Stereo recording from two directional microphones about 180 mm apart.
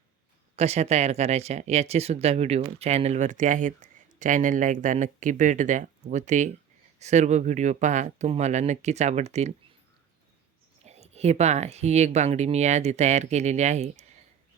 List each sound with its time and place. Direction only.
0.5 s speech: 35° right (ahead or behind)
10.8 s speech: 35° right (ahead or behind)